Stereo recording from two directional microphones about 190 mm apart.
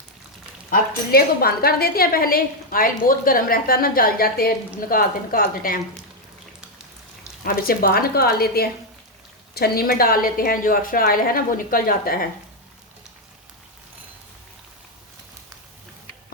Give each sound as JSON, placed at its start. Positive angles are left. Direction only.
{"t": 0.7, "sound": "a woman's voice", "side_deg": 50}
{"t": 7.4, "sound": "a woman's voice", "side_deg": 50}